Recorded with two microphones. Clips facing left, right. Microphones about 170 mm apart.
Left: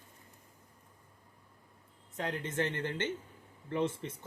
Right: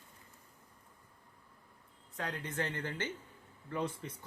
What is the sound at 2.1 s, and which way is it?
Speech, 20° left (ahead or behind).